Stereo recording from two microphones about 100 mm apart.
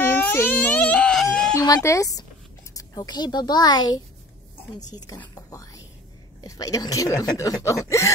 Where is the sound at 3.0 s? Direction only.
45° left (ahead or behind).